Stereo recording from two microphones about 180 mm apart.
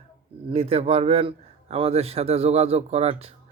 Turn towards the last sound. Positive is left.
turn(degrees=-35)  # may be behind; listen again after turning